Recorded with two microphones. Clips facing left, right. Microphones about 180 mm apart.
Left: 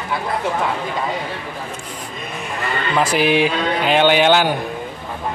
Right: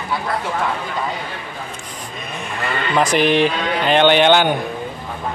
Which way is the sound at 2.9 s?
5° left (ahead or behind).